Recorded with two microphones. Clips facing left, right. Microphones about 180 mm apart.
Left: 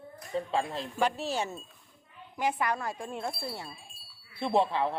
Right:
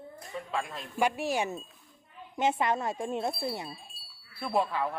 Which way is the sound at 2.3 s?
25° right (ahead or behind).